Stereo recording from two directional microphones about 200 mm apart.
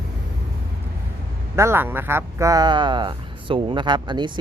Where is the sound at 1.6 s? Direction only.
10° right (ahead or behind).